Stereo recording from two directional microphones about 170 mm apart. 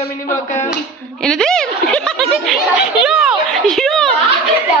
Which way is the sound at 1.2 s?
5° left (ahead or behind).